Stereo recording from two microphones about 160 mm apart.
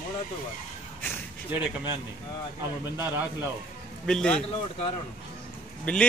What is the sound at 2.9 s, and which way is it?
Speech, 10° right (ahead or behind).